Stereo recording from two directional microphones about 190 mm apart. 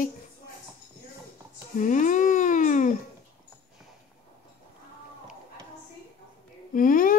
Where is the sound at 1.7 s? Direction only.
45° left (ahead or behind).